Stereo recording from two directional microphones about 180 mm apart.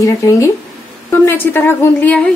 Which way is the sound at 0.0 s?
15° left (ahead or behind).